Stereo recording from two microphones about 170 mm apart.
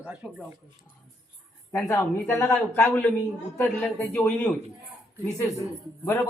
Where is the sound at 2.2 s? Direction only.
15° left (ahead or behind).